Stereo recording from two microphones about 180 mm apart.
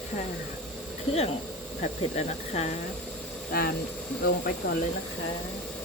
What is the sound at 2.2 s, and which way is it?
Speech, 40° left (ahead or behind).